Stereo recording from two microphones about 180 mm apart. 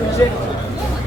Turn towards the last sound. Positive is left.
turn(degrees=20)  # may be behind; listen again after turning